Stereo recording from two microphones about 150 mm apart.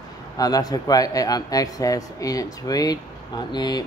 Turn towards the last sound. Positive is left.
turn(degrees=30)  # may be behind; listen again after turning